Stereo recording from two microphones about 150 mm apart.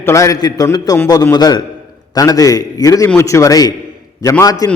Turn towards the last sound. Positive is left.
turn(degrees=25)  # may be behind; listen again after turning